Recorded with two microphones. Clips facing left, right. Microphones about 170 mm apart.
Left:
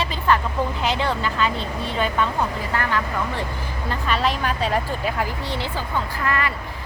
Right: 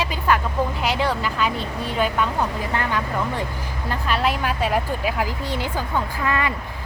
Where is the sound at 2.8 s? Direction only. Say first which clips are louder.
Even; 15° right (ahead or behind).